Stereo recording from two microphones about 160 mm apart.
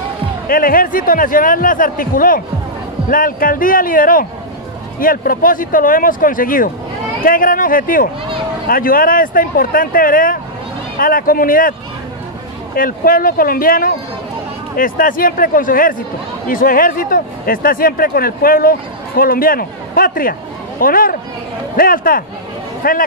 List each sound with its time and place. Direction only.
0.5 s speech: 65° left (ahead or behind)
12.7 s speech: 60° left (ahead or behind)